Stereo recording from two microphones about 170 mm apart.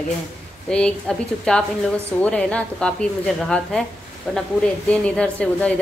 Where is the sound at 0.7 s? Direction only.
5° left (ahead or behind).